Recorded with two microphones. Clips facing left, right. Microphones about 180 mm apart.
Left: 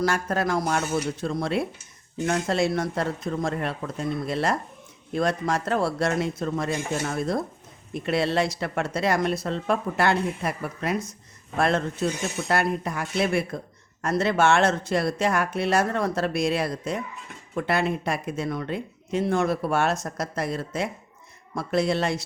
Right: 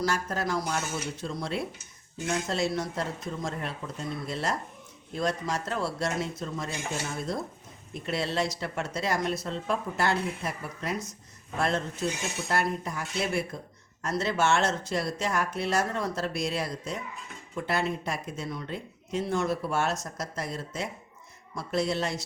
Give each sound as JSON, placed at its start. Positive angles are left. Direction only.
{"t": 0.0, "sound": "speech", "side_deg": 55}